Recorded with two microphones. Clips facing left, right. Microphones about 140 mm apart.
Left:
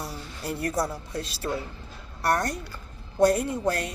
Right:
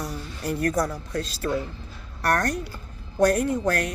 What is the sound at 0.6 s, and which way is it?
Speech, 25° left (ahead or behind).